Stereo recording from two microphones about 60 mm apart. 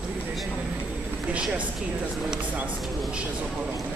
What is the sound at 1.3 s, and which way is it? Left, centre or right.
Speech, centre.